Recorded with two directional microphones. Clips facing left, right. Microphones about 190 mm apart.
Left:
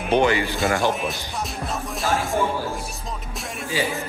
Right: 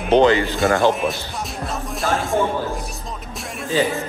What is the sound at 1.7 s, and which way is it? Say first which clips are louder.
Music: right 2 dB; centre (ahead or behind).